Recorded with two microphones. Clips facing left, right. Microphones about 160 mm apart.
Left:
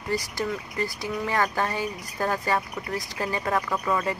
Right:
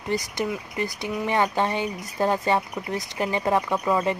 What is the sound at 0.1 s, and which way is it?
Speech, 20° right (ahead or behind).